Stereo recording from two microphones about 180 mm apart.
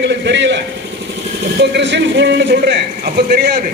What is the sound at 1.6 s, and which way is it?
A man's voice, 75° right (ahead or behind).